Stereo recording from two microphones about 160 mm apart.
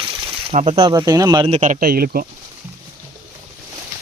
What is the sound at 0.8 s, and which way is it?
Speech, 25° right (ahead or behind).